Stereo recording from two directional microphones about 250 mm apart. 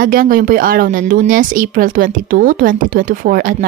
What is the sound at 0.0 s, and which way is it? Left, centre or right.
A woman's voice, right.